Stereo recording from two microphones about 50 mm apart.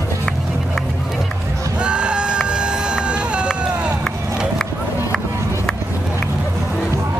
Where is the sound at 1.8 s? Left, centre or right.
Right.